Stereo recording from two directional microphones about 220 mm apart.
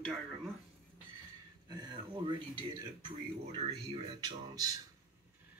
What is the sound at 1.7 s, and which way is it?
Speech, 20° right (ahead or behind).